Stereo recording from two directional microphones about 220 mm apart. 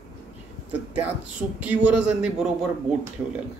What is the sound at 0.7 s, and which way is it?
Speech, 5° right (ahead or behind).